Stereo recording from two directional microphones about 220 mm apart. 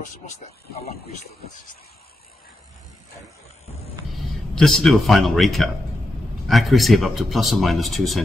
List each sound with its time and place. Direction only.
0.4 s speech: 30° left (ahead or behind)
4.6 s speech: centre (ahead or behind)